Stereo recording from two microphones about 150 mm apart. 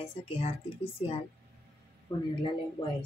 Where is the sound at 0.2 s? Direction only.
40° left (ahead or behind).